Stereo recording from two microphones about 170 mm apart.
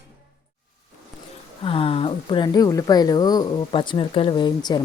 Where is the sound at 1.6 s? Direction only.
30° left (ahead or behind).